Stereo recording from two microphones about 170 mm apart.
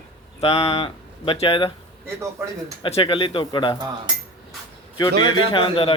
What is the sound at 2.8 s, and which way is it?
Speech, 30° left (ahead or behind).